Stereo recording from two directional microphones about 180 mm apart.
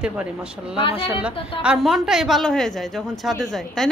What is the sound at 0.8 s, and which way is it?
Speech, 30° left (ahead or behind).